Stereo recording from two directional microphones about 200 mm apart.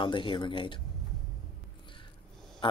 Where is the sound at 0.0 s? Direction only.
25° left (ahead or behind).